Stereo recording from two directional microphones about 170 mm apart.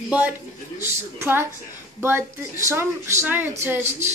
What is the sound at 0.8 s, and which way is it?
Speech, 15° right (ahead or behind).